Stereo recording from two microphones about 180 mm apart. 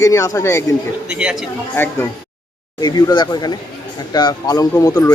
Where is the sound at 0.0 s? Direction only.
15° left (ahead or behind).